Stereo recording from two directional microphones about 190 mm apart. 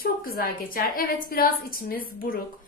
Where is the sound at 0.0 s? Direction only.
50° left (ahead or behind).